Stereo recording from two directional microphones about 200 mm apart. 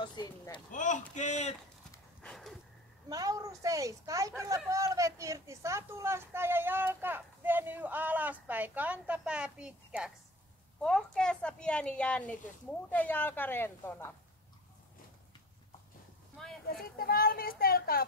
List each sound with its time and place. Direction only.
0.0 s speech: 25° left (ahead or behind)
0.7 s speech: 40° left (ahead or behind)
2.2 s a sound: centre (ahead or behind)
3.1 s a woman's voice: 15° right (ahead or behind); by 14.1 s 10° left (ahead or behind)
16.6 s a child's voice: 45° left (ahead or behind)